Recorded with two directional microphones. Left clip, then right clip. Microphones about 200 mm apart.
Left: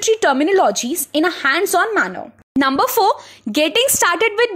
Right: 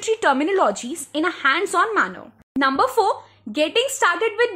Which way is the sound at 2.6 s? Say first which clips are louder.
Left 3 dB; 35° left (ahead or behind).